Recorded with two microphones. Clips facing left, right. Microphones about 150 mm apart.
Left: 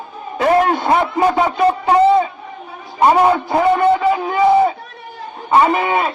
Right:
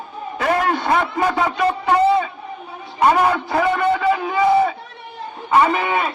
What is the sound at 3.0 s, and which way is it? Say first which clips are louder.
A man's voice: left 4 dB; 25° left (ahead or behind).